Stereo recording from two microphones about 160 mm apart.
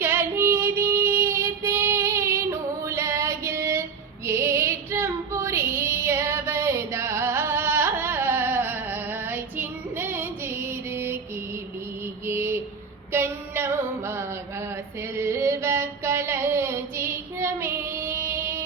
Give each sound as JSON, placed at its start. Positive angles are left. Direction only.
{"t": 0.0, "sound": "music", "side_deg": -15}
{"t": 4.3, "sound": "female singing", "side_deg": -15}
{"t": 12.2, "sound": "mantra", "side_deg": -15}
{"t": 13.1, "sound": "female singing", "side_deg": -15}
{"t": 15.1, "sound": "a sound", "side_deg": -15}